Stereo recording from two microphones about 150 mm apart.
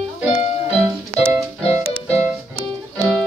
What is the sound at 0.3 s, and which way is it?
Music, 40° left (ahead or behind).